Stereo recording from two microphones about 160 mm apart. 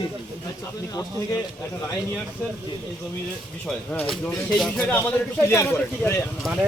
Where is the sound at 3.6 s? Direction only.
5° left (ahead or behind).